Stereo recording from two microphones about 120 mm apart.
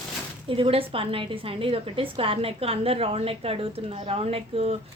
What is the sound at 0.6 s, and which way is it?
A woman's voice, 50° right (ahead or behind).